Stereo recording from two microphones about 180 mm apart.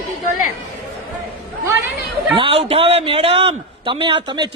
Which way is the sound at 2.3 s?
30° right (ahead or behind).